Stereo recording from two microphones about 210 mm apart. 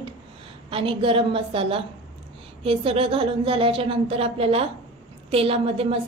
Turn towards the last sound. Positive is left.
turn(degrees=-25)  # may be behind; listen again after turning